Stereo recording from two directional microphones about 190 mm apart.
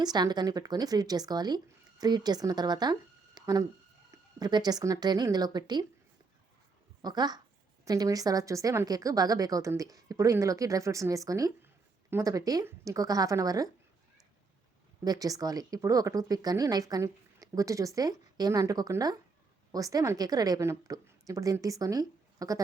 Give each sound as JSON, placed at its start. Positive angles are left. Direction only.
{"t": 0.0, "sound": "a woman's voice", "side_deg": -20}
{"t": 7.0, "sound": "a woman's voice", "side_deg": -20}
{"t": 15.0, "sound": "a woman's voice", "side_deg": -20}